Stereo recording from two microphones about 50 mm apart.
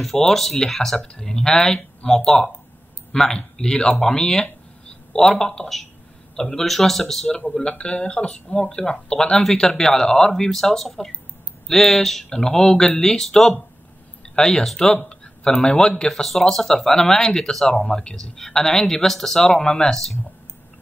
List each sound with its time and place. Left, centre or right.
0.0 s a man's voice: centre
7.4 s speech: centre